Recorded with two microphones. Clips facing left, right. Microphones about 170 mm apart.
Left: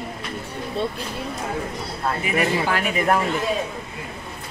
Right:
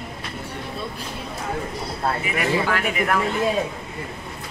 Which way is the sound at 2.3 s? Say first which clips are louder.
Left 2 dB; 30° left (ahead or behind).